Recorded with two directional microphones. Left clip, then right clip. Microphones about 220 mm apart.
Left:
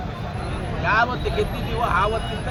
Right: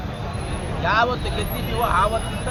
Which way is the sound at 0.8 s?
15° right (ahead or behind).